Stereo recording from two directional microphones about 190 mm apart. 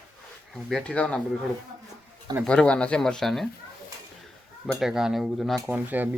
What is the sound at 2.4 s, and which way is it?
Speech, 5° left (ahead or behind).